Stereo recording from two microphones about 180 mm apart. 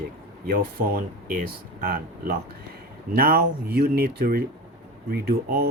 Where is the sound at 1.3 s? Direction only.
50° right (ahead or behind).